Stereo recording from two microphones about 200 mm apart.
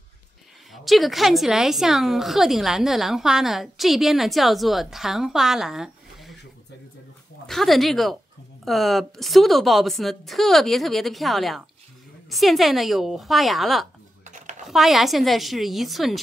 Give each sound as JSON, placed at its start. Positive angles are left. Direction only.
{"t": 0.8, "sound": "a woman's voice", "side_deg": 0}
{"t": 7.4, "sound": "a woman's voice", "side_deg": 0}
{"t": 14.2, "sound": "a sound", "side_deg": -35}
{"t": 14.7, "sound": "a woman's voice", "side_deg": 0}